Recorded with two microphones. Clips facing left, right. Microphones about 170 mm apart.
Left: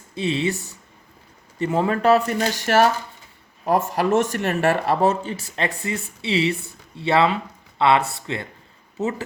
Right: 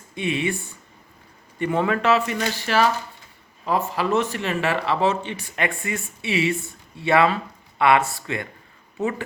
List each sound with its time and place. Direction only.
0.2 s speech: 15° right (ahead or behind)
0.5 s speech: 80° left
1.5 s speech: 30° left (ahead or behind)